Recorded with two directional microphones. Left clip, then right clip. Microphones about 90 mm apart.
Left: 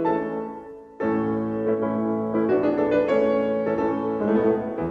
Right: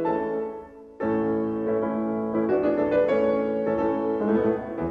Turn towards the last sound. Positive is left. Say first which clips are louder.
# left 2 dB
turn(degrees=30)  # may be behind; listen again after turning